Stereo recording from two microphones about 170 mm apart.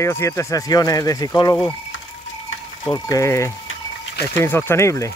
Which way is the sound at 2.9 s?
20° left (ahead or behind).